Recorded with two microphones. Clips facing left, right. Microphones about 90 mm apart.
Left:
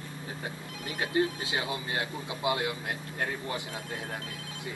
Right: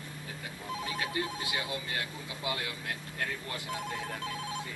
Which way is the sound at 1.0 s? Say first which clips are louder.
Left 11 dB; 30° left (ahead or behind).